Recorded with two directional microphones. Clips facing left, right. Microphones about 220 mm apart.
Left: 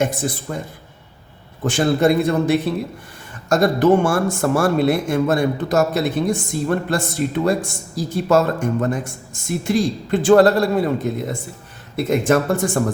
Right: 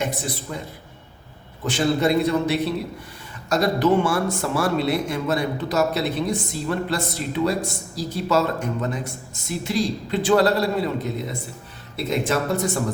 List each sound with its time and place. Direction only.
0.0 s a man's voice: 50° left (ahead or behind)
1.6 s a man's voice: 50° left (ahead or behind)